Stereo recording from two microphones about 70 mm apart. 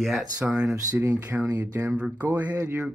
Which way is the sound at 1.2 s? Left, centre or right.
Right.